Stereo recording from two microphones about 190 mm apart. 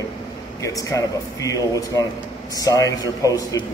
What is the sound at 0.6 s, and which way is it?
Speech, 15° left (ahead or behind).